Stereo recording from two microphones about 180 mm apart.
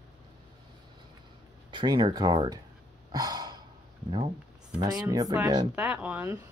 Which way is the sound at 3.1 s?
20° right (ahead or behind).